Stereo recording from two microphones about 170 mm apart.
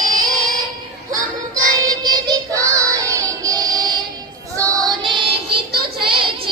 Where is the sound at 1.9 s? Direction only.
25° right (ahead or behind).